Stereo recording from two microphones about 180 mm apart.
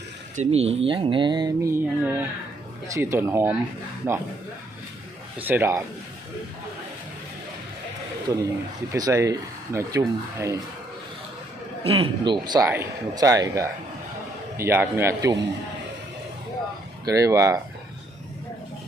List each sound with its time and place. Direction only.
0.3 s speech: 35° right (ahead or behind); by 3.5 s 15° right (ahead or behind)
5.4 s speech: 10° right (ahead or behind)
8.3 s speech: 15° right (ahead or behind)
11.8 s speech: 30° right (ahead or behind); by 15.4 s 15° right (ahead or behind)
17.1 s speech: 20° right (ahead or behind)